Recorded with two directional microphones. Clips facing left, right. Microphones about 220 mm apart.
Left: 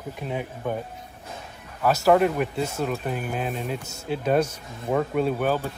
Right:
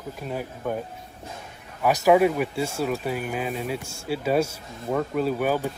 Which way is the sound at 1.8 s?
15° right (ahead or behind).